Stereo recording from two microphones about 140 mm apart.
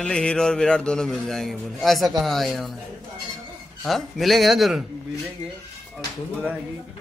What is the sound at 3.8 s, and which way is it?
A man's voice, centre (ahead or behind).